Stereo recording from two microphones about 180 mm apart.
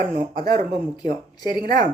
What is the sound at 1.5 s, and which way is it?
Speech, 50° right (ahead or behind).